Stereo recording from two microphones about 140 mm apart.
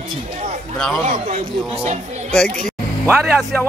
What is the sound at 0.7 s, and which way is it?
Speech, 5° left (ahead or behind).